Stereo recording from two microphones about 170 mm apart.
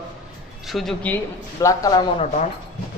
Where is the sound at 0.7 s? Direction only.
Centre (ahead or behind).